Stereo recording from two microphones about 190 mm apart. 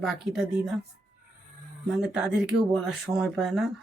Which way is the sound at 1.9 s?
5° right (ahead or behind).